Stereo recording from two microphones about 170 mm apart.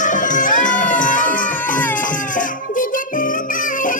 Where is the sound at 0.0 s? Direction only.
50° left (ahead or behind).